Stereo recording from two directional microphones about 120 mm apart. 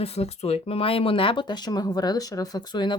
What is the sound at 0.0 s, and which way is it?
Speech, 60° left (ahead or behind).